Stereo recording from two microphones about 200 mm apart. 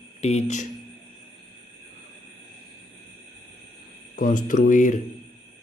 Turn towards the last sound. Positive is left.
turn(degrees=40)  # may be behind; listen again after turning